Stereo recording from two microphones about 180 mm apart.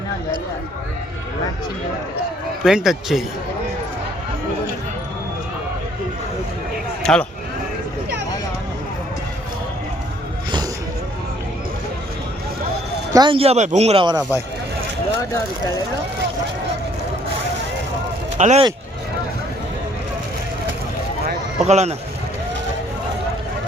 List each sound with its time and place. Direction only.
2.6 s speech: centre (ahead or behind)
7.0 s speech: 5° left (ahead or behind)
13.1 s speech: 30° right (ahead or behind)
18.3 s speech: 40° right (ahead or behind)
21.6 s speech: 35° right (ahead or behind)